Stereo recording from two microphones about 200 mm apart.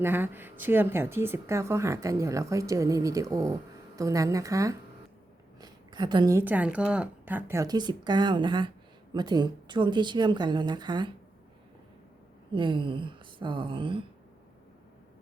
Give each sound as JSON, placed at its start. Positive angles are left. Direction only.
{"t": 0.0, "sound": "a woman's voice", "side_deg": -10}
{"t": 12.5, "sound": "a woman's voice", "side_deg": -25}